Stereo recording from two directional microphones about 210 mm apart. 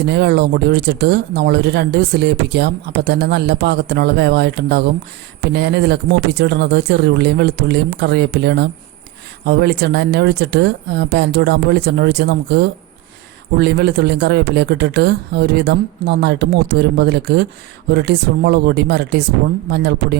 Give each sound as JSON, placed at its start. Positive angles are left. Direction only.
{"t": 0.1, "sound": "speech", "side_deg": -50}